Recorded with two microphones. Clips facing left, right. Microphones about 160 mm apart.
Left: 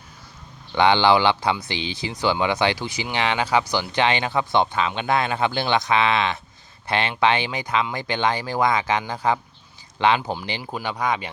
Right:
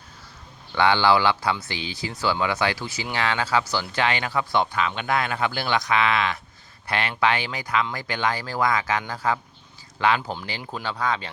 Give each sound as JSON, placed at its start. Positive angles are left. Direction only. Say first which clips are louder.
{"t": 0.7, "sound": "speech", "louder": "left 2 dB", "side_deg": 20}